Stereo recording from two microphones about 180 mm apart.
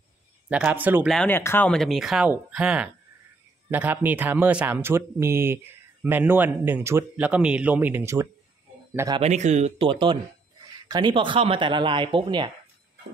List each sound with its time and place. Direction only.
0.5 s a man's voice: 5° right (ahead or behind)
1.1 s a man's voice: 10° left (ahead or behind); by 9.2 s 20° right (ahead or behind)
9.2 s speech: 40° right (ahead or behind)